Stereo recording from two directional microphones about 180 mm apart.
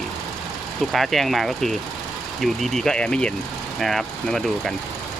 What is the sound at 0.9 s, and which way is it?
Speech, centre (ahead or behind).